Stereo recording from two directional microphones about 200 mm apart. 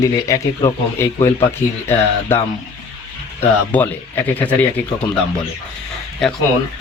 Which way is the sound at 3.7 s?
10° left (ahead or behind).